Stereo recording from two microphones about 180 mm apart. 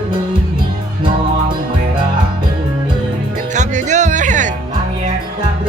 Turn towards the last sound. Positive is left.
turn(degrees=-45)  # may be behind; listen again after turning